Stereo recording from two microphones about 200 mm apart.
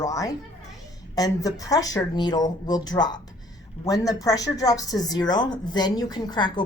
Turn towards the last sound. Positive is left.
turn(degrees=20)  # may be behind; listen again after turning